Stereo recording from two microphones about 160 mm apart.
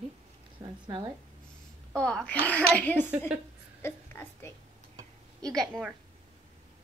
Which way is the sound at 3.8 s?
15° left (ahead or behind).